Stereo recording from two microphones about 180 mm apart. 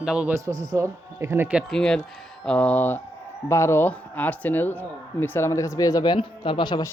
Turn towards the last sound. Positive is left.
turn(degrees=25)  # may be behind; listen again after turning